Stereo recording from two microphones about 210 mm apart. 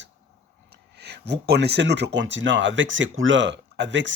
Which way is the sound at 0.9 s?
50° right (ahead or behind).